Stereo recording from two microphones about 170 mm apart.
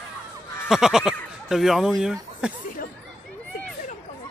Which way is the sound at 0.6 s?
Centre (ahead or behind).